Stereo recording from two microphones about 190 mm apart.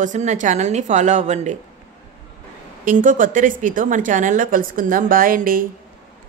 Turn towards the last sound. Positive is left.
turn(degrees=-45)  # may be behind; listen again after turning